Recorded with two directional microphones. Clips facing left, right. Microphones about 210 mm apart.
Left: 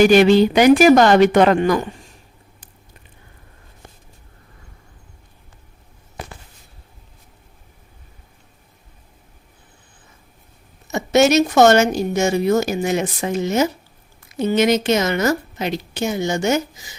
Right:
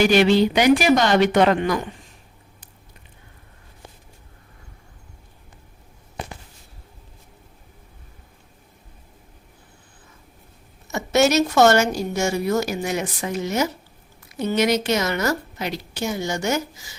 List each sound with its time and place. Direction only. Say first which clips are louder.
0.0 s speech: left 5 dB; 45° left (ahead or behind)
10.8 s speech: left 4 dB; 20° left (ahead or behind)